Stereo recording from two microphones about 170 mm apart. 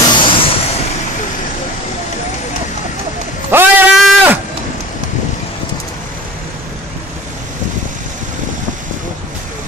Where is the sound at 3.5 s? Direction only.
15° right (ahead or behind).